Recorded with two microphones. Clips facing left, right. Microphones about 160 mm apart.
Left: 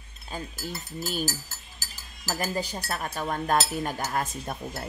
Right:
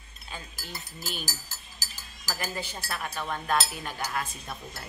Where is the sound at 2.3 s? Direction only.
40° left (ahead or behind).